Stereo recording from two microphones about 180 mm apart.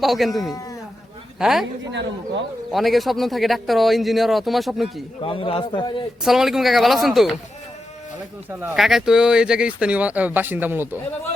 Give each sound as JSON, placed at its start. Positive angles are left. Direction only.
{"t": 0.0, "sound": "a man's voice", "side_deg": 0}
{"t": 1.9, "sound": "speech", "side_deg": -85}
{"t": 2.7, "sound": "a man's voice", "side_deg": 0}
{"t": 5.2, "sound": "a man's voice", "side_deg": 30}
{"t": 6.2, "sound": "a man's voice", "side_deg": 0}
{"t": 8.4, "sound": "speech", "side_deg": -5}